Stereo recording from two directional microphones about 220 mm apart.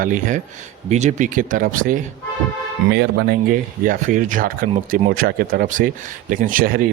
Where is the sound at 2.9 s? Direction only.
50° right (ahead or behind).